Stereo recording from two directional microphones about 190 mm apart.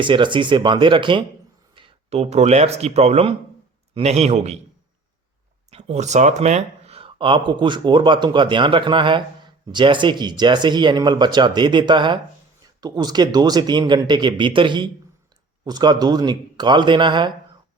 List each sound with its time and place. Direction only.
0.0 s a man's voice: 25° right (ahead or behind)
5.7 s speech: 35° right (ahead or behind)